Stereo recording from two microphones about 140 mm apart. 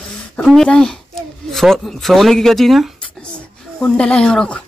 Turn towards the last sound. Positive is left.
turn(degrees=5)  # may be behind; listen again after turning